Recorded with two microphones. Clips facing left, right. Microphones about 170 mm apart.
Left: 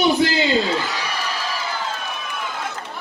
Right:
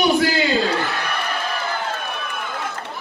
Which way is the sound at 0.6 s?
60° right (ahead or behind).